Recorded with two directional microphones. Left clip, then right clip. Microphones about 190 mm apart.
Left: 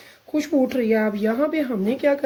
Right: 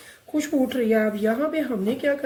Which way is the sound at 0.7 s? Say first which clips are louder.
Left 1 dB; 45° left (ahead or behind).